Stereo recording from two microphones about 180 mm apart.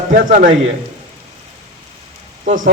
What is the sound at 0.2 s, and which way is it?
Speech, 50° right (ahead or behind).